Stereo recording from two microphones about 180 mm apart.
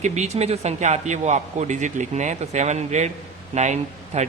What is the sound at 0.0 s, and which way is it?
Speech, 40° right (ahead or behind).